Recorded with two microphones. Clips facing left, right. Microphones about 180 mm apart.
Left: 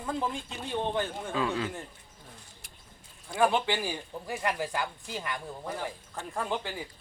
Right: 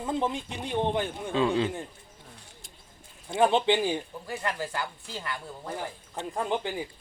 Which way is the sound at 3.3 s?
20° right (ahead or behind).